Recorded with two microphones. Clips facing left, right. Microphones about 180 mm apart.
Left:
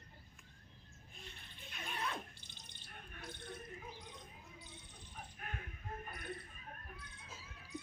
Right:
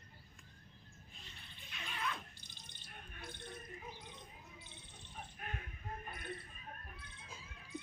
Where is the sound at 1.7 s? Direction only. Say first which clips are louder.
Left 2 dB; 45° left (ahead or behind).